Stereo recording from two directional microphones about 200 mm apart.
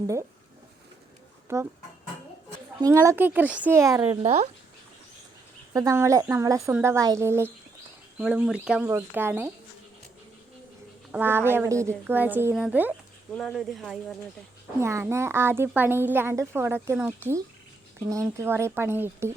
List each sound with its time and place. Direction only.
1.5 s a woman's voice: 15° right (ahead or behind)
2.8 s a woman's voice: 15° right (ahead or behind)
4.2 s speech: 35° right (ahead or behind)
5.7 s a woman's voice: 15° right (ahead or behind)
11.1 s a woman's voice: 10° right (ahead or behind)
14.8 s a woman's voice: 15° right (ahead or behind)